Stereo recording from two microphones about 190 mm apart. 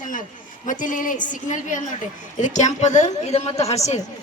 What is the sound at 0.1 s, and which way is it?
A woman's voice, 45° left (ahead or behind).